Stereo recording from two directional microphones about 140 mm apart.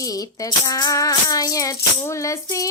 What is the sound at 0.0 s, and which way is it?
Music, 25° left (ahead or behind).